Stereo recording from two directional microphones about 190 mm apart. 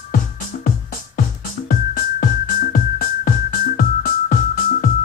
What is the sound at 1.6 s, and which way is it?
Music, 45° left (ahead or behind).